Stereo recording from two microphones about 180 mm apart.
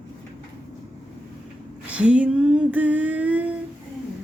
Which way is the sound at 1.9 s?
5° right (ahead or behind).